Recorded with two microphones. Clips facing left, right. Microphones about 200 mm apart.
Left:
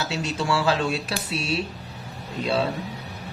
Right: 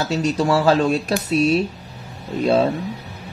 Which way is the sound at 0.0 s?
40° right (ahead or behind).